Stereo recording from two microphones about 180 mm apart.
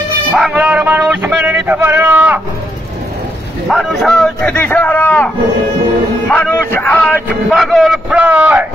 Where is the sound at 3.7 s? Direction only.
Centre (ahead or behind).